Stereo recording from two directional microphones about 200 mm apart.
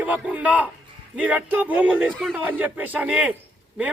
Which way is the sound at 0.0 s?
5° right (ahead or behind).